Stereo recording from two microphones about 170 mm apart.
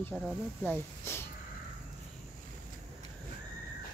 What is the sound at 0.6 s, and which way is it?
Speech, 15° left (ahead or behind).